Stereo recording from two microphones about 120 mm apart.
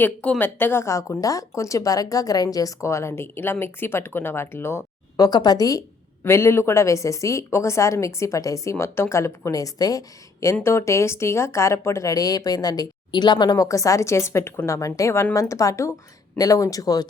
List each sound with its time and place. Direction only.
0.0 s speech: 15° left (ahead or behind)
5.2 s speech: 35° left (ahead or behind)
6.2 s speech: 20° left (ahead or behind)